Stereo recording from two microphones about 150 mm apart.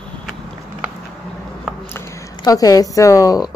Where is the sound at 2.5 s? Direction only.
25° left (ahead or behind).